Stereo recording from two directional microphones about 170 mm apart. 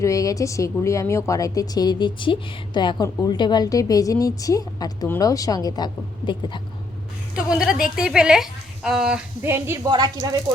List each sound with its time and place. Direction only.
0.0 s a woman's voice: 20° left (ahead or behind)
7.3 s a woman's voice: 5° right (ahead or behind); by 10.3 s 25° right (ahead or behind)